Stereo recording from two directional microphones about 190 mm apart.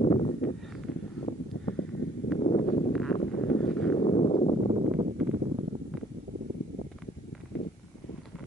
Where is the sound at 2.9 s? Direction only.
Centre (ahead or behind).